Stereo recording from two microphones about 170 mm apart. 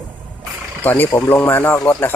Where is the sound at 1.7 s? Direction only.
20° left (ahead or behind).